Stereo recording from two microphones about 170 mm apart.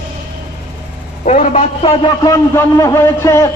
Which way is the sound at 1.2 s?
45° left (ahead or behind).